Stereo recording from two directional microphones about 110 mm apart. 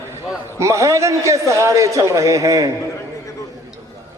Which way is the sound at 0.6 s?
30° right (ahead or behind).